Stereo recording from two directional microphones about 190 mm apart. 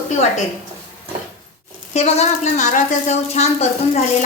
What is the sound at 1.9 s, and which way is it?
Speech, 35° left (ahead or behind).